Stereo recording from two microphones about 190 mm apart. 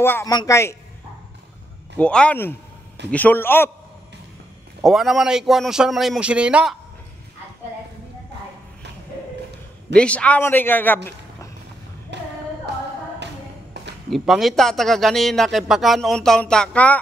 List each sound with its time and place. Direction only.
0.0 s a man's voice: 15° left (ahead or behind)
2.0 s a man's voice: 5° left (ahead or behind)
4.8 s a man's voice: centre (ahead or behind)
9.9 s a man's voice: 5° left (ahead or behind)
12.1 s a sound: 65° right (ahead or behind)
13.7 s a sound: 65° right (ahead or behind)
14.1 s a man's voice: centre (ahead or behind)